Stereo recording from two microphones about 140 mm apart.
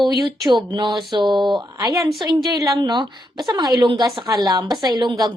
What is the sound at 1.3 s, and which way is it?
Speech, centre (ahead or behind).